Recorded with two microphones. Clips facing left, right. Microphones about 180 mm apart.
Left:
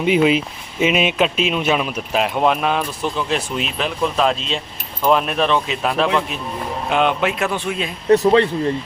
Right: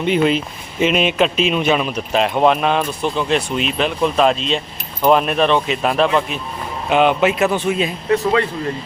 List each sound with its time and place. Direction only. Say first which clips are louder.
0.0 s speech: left 1 dB; 5° left (ahead or behind)
8.1 s speech: left 5 dB; 35° left (ahead or behind)